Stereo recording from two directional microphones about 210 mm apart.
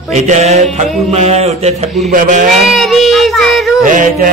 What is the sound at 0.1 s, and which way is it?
Music, 35° right (ahead or behind).